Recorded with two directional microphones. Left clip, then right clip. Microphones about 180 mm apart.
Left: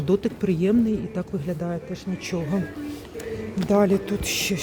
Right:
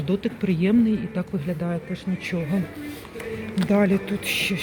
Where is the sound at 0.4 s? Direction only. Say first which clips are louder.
Right 4 dB; 10° left (ahead or behind).